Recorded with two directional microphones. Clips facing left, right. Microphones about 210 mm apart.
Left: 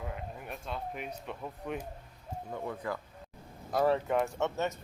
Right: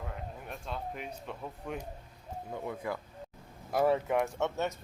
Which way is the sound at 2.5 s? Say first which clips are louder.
Even; 15° right (ahead or behind).